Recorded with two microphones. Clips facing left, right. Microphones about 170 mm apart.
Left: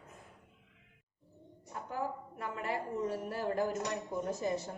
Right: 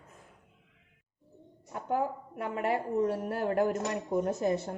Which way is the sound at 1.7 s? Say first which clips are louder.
Right 7 dB; 60° right (ahead or behind).